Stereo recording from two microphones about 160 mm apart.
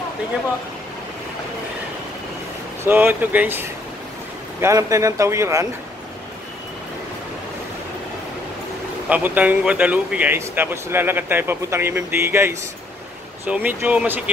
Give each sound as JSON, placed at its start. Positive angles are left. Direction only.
{"t": 2.8, "sound": "speech", "side_deg": -10}
{"t": 9.1, "sound": "speech", "side_deg": -10}